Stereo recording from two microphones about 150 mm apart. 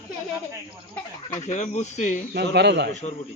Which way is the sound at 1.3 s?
55° left (ahead or behind).